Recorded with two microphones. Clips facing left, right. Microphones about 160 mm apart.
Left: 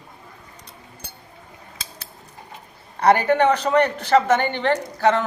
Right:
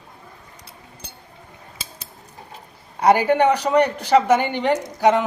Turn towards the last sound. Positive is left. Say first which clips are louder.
# right 2 dB
turn(degrees=-15)  # may be behind; listen again after turning